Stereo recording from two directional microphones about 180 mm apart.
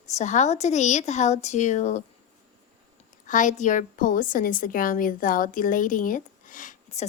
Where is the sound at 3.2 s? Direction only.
45° left (ahead or behind).